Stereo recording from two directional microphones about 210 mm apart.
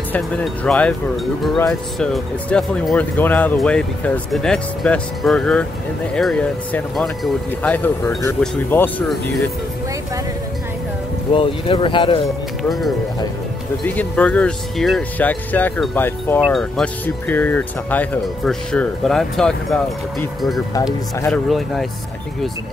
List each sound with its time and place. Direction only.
0.1 s speech: 5° left (ahead or behind)
11.3 s speech: 25° left (ahead or behind)
12.6 s speech: centre (ahead or behind)